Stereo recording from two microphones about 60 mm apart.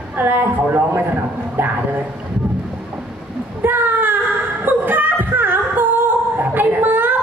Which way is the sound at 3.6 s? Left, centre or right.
Right.